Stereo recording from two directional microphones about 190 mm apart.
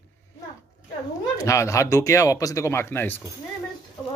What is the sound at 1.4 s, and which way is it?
Speech, 15° left (ahead or behind).